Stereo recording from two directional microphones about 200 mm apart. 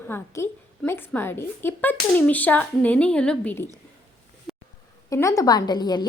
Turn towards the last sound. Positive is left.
turn(degrees=20)  # may be behind; listen again after turning